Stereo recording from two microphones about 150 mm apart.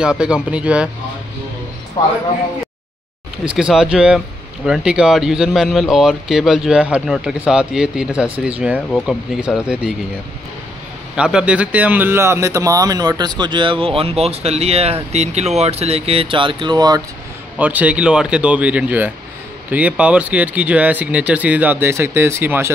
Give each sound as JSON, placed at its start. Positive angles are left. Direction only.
{"t": 0.2, "sound": "speech", "side_deg": -5}
{"t": 3.5, "sound": "speech", "side_deg": -5}
{"t": 11.1, "sound": "a man's voice", "side_deg": -5}
{"t": 17.6, "sound": "speech", "side_deg": -10}